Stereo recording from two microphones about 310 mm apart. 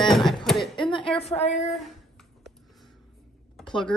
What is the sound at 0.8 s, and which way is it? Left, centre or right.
Speech, centre.